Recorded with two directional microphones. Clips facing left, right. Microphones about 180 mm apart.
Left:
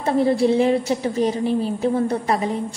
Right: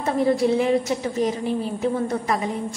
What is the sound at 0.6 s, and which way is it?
A woman's voice, 30° left (ahead or behind).